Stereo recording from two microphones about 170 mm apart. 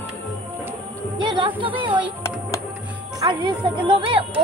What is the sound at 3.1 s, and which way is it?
Music, 30° right (ahead or behind).